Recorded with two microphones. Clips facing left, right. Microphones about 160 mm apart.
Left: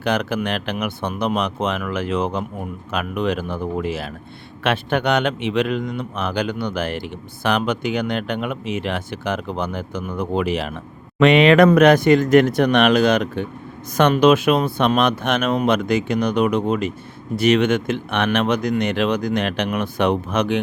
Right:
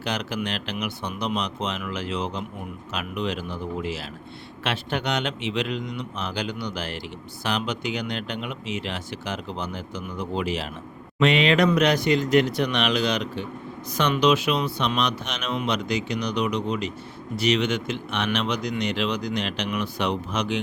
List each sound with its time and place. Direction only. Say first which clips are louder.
0.0 s speech: left 7 dB; 55° left (ahead or behind)